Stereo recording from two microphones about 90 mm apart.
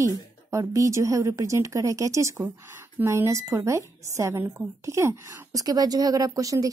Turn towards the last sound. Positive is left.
turn(degrees=-40)  # may be behind; listen again after turning